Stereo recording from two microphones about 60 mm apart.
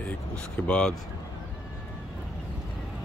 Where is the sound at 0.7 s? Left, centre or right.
Centre.